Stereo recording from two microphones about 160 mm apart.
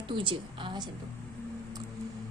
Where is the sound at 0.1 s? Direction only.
30° right (ahead or behind).